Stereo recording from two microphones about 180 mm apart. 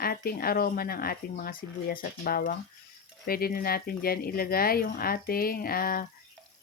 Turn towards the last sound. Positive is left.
turn(degrees=55)  # may be behind; listen again after turning